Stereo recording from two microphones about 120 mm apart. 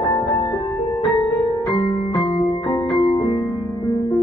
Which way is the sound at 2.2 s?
40° left (ahead or behind).